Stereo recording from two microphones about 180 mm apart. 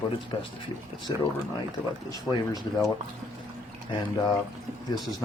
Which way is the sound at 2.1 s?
20° left (ahead or behind).